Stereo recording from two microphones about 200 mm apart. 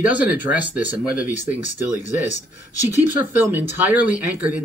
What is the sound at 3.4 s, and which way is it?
Speech, 10° right (ahead or behind).